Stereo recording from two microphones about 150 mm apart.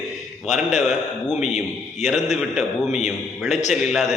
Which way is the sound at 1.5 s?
50° left (ahead or behind).